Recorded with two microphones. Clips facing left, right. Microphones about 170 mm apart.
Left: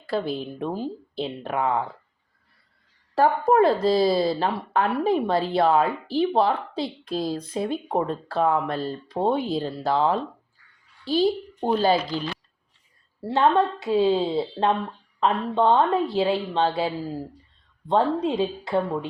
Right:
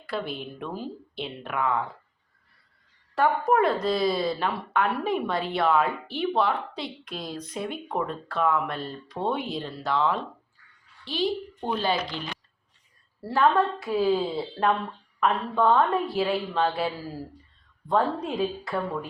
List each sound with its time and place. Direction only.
0.1 s speech: 35° left (ahead or behind)
3.2 s speech: 30° left (ahead or behind)
13.2 s speech: 25° left (ahead or behind)